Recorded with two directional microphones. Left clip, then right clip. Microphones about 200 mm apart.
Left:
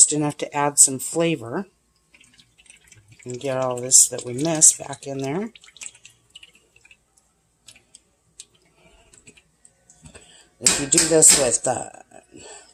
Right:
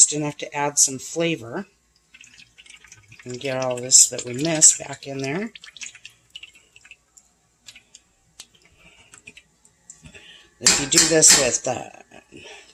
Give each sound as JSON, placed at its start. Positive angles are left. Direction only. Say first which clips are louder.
{"t": 0.0, "sound": "speech", "louder": "even", "side_deg": 20}
{"t": 2.9, "sound": "drip", "louder": "left 1 dB", "side_deg": 10}
{"t": 3.8, "sound": "speech", "louder": "right 1 dB", "side_deg": 10}
{"t": 10.0, "sound": "clicking", "louder": "right 3 dB", "side_deg": 5}
{"t": 10.8, "sound": "speech", "louder": "even", "side_deg": 10}